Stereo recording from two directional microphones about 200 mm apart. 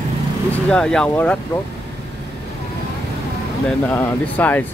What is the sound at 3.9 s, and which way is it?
Speech, 5° left (ahead or behind).